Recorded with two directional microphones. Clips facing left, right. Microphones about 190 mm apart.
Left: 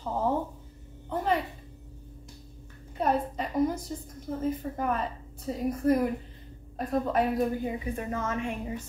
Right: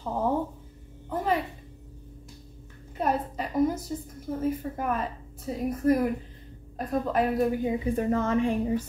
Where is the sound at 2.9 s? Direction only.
Centre (ahead or behind).